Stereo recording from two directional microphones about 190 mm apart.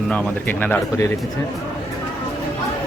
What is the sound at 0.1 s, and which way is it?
Speech, 5° left (ahead or behind).